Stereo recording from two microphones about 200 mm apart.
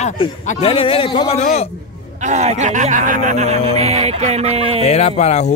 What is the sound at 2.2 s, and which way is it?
Speech, 35° right (ahead or behind).